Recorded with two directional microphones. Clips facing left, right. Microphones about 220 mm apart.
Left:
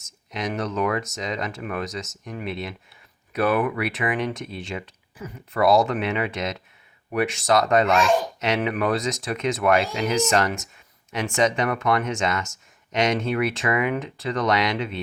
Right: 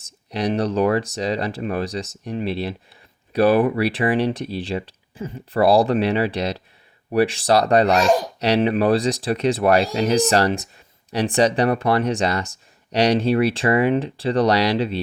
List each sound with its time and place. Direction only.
0.0 s speech: 35° right (ahead or behind)